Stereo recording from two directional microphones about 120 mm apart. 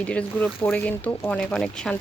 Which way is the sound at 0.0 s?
10° left (ahead or behind).